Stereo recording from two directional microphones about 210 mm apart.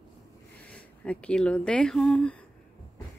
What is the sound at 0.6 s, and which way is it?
Speech, 5° left (ahead or behind).